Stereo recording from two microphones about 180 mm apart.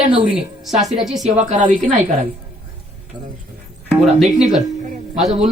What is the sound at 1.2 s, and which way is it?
Speech, 40° right (ahead or behind).